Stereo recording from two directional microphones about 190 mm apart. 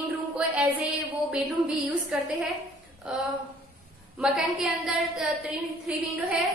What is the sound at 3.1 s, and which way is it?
A woman's voice, 5° right (ahead or behind).